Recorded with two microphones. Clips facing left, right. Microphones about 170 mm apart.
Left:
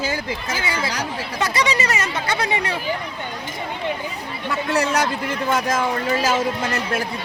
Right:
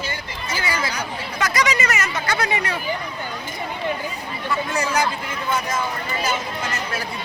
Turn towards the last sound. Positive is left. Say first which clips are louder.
# left 4 dB
turn(degrees=65)  # may be behind; listen again after turning